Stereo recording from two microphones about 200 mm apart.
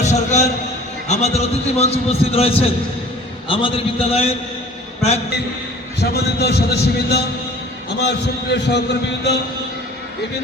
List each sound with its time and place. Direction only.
0.0 s a man's voice: 35° left (ahead or behind)
6.0 s a man's voice: 55° left (ahead or behind)